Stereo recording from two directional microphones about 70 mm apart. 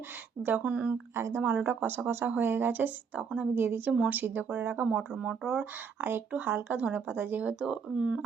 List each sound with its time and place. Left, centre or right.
0.4 s speech: right
1.1 s speech: right
1.4 s speech: right
6.0 s speech: right
7.6 s speech: centre